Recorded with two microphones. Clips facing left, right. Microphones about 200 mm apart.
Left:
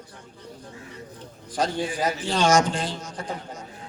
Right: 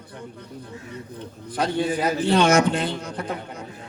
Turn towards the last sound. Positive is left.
turn(degrees=-60)  # may be behind; listen again after turning